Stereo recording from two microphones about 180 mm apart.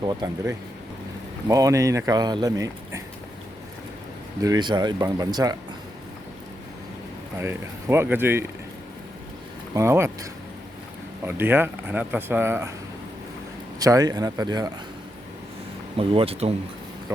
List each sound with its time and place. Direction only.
0.0 s speech: 20° right (ahead or behind)
4.4 s speech: 20° right (ahead or behind)
7.3 s speech: 15° right (ahead or behind)
9.7 s speech: 15° right (ahead or behind)
11.3 s speech: 10° right (ahead or behind)
13.7 s speech: 20° right (ahead or behind)
16.0 s speech: 30° right (ahead or behind)